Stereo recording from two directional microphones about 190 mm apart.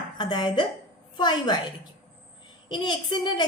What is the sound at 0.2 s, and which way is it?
A woman's voice, 25° left (ahead or behind).